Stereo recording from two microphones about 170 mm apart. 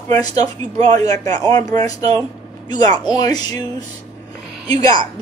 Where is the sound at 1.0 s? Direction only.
20° left (ahead or behind).